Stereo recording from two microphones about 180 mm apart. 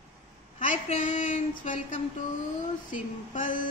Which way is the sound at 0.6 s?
45° left (ahead or behind).